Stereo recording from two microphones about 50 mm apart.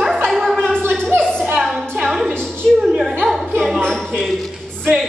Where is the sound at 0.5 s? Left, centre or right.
Centre.